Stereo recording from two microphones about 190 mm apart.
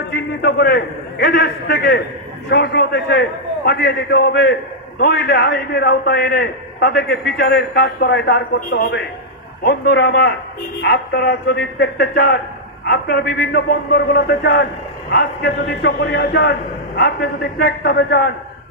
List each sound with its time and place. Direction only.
0.1 s a man's voice: 65° left (ahead or behind); by 8.9 s 45° left (ahead or behind)
9.6 s a man's voice: 60° left (ahead or behind)